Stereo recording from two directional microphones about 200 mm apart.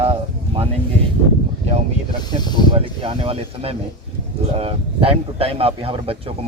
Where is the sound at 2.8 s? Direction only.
30° right (ahead or behind).